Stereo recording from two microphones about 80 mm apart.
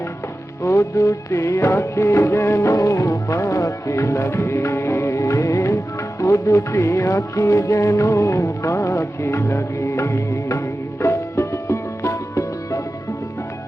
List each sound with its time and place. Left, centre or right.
0.6 s music: left